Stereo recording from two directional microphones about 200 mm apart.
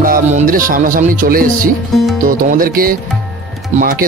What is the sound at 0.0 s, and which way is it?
Speech, 45° right (ahead or behind).